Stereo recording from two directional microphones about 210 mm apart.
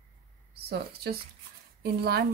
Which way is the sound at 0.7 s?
50° right (ahead or behind).